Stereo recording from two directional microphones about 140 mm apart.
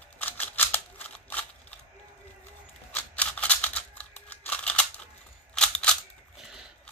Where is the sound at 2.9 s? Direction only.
10° left (ahead or behind).